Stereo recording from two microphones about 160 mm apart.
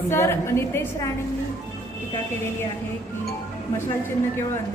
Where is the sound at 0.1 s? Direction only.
15° left (ahead or behind).